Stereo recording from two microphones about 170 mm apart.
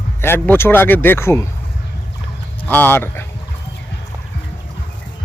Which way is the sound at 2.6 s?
10° left (ahead or behind).